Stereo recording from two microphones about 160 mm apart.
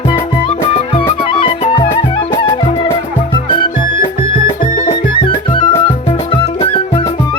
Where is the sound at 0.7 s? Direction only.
40° left (ahead or behind).